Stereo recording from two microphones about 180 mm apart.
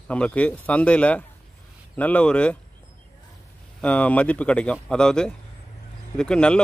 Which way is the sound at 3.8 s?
5° left (ahead or behind).